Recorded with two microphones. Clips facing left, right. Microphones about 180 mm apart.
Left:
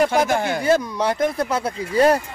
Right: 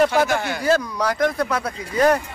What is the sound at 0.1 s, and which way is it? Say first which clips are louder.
Speech: left 1 dB; 20° left (ahead or behind).